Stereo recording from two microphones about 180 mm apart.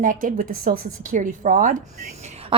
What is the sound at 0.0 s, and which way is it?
A woman's voice, 50° right (ahead or behind).